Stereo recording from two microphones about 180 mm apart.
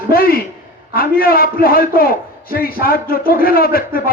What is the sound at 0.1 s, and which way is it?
A man's voice, 55° left (ahead or behind).